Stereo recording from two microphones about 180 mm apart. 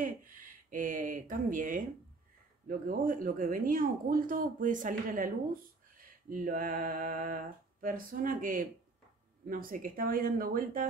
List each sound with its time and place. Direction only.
0.0 s speech: 50° right (ahead or behind)